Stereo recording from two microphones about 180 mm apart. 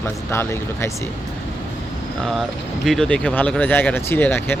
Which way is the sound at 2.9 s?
5° left (ahead or behind).